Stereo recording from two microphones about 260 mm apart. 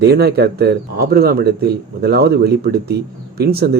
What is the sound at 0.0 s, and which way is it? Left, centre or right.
Speech, right.